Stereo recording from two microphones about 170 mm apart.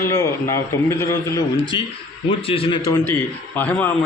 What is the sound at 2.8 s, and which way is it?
A man's voice, 15° left (ahead or behind).